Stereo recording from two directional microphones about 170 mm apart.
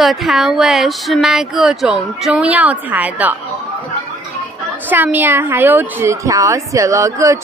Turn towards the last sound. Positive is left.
turn(degrees=-20)  # may be behind; listen again after turning